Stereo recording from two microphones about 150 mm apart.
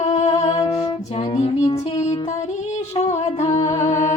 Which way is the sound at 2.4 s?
50° left (ahead or behind).